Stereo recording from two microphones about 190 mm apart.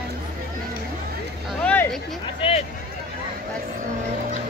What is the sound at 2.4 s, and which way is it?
Vehicle, 30° left (ahead or behind).